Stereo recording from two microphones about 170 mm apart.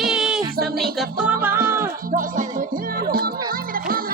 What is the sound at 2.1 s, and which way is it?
Music, 50° right (ahead or behind).